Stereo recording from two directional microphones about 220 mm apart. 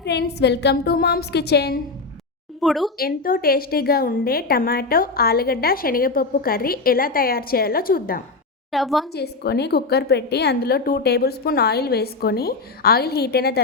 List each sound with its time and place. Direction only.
0.0 s a woman's voice: 50° left (ahead or behind)
2.6 s a woman's voice: centre (ahead or behind)
3.0 s a woman's voice: 40° left (ahead or behind)
8.7 s a woman's voice: centre (ahead or behind)
9.1 s a woman's voice: 45° left (ahead or behind)